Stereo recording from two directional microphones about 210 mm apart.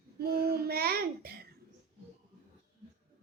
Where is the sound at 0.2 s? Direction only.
50° right (ahead or behind).